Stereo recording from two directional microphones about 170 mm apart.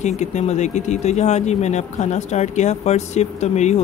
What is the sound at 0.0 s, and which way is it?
Speech, 45° left (ahead or behind).